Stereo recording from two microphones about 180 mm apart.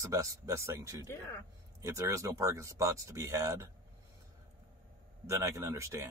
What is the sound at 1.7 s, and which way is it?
Speech, 15° right (ahead or behind).